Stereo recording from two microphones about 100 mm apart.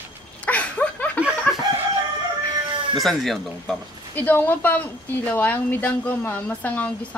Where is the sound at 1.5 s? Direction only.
15° left (ahead or behind).